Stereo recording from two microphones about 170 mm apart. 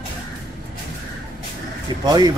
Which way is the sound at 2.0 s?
25° right (ahead or behind).